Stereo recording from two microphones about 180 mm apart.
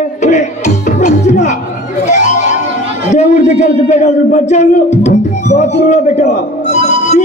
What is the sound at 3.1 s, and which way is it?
A man's voice, 40° left (ahead or behind).